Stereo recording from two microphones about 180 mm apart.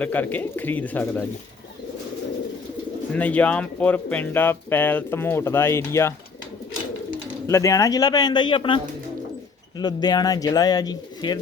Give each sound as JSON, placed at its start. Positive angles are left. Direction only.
{"t": 0.0, "sound": "speech", "side_deg": 10}
{"t": 3.1, "sound": "speech", "side_deg": 10}
{"t": 7.4, "sound": "speech", "side_deg": 15}